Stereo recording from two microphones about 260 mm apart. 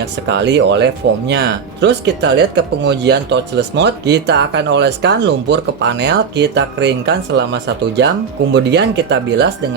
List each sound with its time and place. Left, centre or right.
0.0 s speech: right